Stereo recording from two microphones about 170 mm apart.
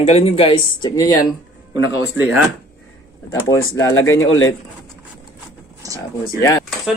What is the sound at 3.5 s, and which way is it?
Speech, 15° left (ahead or behind).